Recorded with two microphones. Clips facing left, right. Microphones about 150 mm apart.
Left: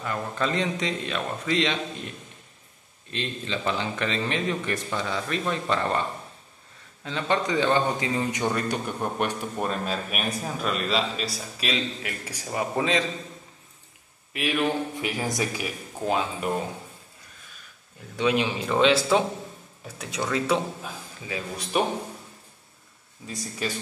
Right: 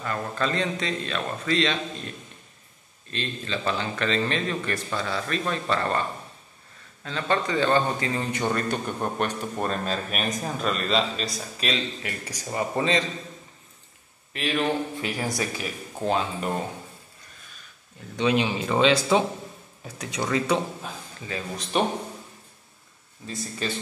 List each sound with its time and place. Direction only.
0.0 s a man's voice: 15° left (ahead or behind)
14.3 s speech: 10° left (ahead or behind)
16.1 s speech: 5° left (ahead or behind)
18.1 s a man's voice: 5° left (ahead or behind)
23.2 s speech: 10° left (ahead or behind)